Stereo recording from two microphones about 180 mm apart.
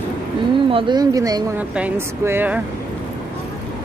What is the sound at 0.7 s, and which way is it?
Speech, 25° right (ahead or behind).